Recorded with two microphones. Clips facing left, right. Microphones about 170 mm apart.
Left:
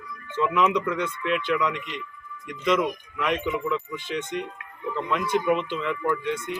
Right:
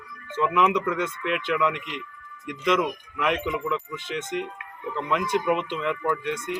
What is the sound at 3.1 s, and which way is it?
Speech, 10° right (ahead or behind).